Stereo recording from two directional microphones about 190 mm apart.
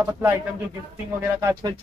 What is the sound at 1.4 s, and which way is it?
Speech, 20° right (ahead or behind).